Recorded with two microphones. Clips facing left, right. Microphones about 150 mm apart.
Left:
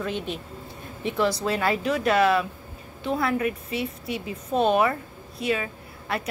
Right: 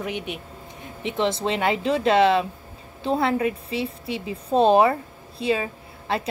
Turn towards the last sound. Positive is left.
turn(degrees=-30)  # may be behind; listen again after turning